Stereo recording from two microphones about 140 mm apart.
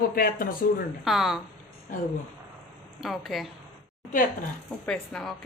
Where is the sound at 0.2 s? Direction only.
90° left.